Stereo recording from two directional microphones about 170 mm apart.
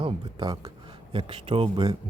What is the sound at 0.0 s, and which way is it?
Speech, 25° right (ahead or behind).